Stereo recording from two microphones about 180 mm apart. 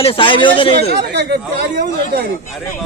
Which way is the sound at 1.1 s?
70° right (ahead or behind).